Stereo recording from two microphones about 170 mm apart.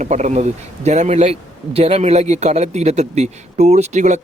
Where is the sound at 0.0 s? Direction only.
45° right (ahead or behind).